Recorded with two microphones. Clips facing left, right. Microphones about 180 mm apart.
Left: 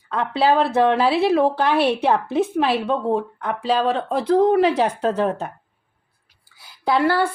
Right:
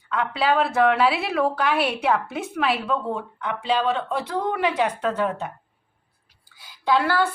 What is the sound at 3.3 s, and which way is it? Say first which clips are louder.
Speech: left 3 dB; 45° left (ahead or behind).